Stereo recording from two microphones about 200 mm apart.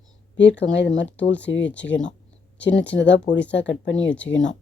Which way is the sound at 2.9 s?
65° left (ahead or behind).